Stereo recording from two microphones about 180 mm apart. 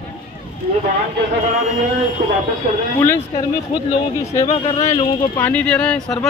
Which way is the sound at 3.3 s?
25° left (ahead or behind).